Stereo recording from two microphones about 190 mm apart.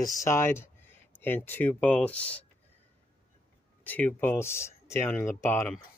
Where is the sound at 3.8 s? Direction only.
10° left (ahead or behind).